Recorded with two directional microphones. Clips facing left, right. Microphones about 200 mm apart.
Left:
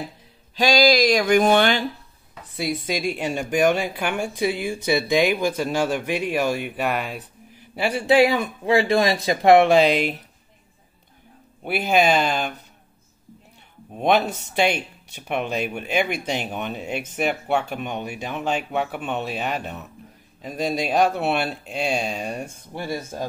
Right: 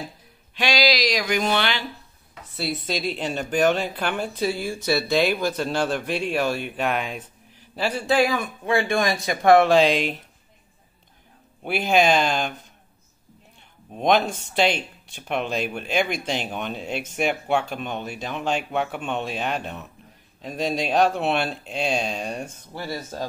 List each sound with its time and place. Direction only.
0.6 s a sound: 45° left (ahead or behind)
2.5 s speech: 10° left (ahead or behind); by 9.1 s 30° left (ahead or behind)
9.2 s speech: 20° left (ahead or behind)
9.7 s speech: 10° left (ahead or behind)
11.6 s speech: 5° left (ahead or behind)
13.9 s speech: 5° left (ahead or behind)
22.8 s speech: 15° left (ahead or behind)